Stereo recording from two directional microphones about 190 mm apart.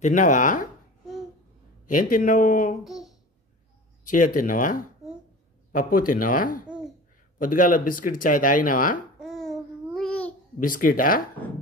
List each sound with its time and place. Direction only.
0.0 s speech: 40° left (ahead or behind)
1.9 s speech: 45° left (ahead or behind)
2.8 s a child's voice: centre (ahead or behind)
4.0 s speech: 45° left (ahead or behind)
9.2 s babbling: centre (ahead or behind)
10.6 s speech: 45° left (ahead or behind)